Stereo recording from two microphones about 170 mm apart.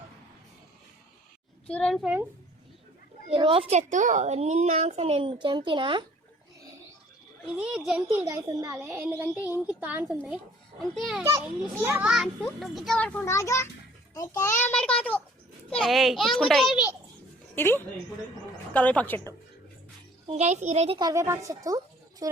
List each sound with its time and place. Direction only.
1.7 s a child's voice: 5° left (ahead or behind)
3.3 s a child's voice: 30° right (ahead or behind)
7.4 s a child's voice: 5° right (ahead or behind)
8.2 s a child's voice: 20° right (ahead or behind); by 11.2 s centre (ahead or behind)
11.2 s a child's voice: 20° right (ahead or behind); by 14.5 s 20° left (ahead or behind)
14.6 s a child's voice: 5° left (ahead or behind)
17.5 s a woman's voice: 10° left (ahead or behind)
20.2 s a child's voice: 40° right (ahead or behind)
21.0 s speech: 20° right (ahead or behind)